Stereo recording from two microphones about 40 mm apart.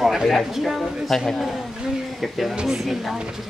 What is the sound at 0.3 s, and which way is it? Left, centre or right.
Speech, centre.